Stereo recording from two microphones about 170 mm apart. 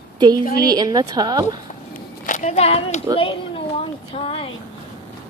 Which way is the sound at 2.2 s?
45° left (ahead or behind).